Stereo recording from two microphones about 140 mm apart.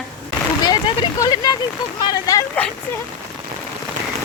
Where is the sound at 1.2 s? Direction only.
30° left (ahead or behind).